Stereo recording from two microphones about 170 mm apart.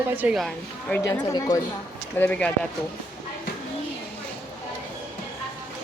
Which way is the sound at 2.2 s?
10° left (ahead or behind).